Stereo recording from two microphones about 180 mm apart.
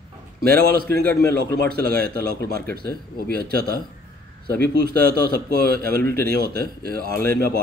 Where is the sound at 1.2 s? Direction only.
15° left (ahead or behind).